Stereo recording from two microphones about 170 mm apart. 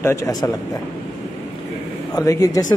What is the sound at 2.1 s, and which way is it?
Speech, 20° left (ahead or behind).